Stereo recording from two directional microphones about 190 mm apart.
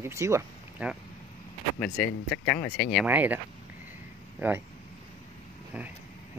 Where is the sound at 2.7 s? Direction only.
50° left (ahead or behind).